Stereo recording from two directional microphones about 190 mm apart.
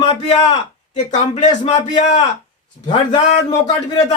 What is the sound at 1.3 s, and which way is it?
Speech, 35° left (ahead or behind).